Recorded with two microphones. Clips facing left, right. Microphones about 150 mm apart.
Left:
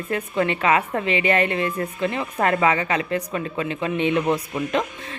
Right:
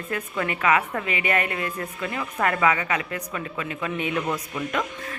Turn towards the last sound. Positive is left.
turn(degrees=25)  # may be behind; listen again after turning